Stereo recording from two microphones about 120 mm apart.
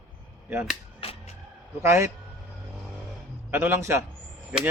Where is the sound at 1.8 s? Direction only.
20° right (ahead or behind).